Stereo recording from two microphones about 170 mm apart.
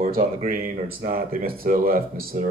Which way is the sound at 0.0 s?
50° right (ahead or behind).